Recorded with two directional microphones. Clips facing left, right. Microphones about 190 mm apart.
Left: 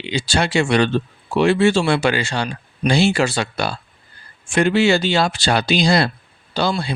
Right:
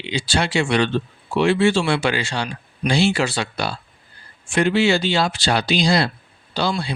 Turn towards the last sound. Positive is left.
turn(degrees=45)  # may be behind; listen again after turning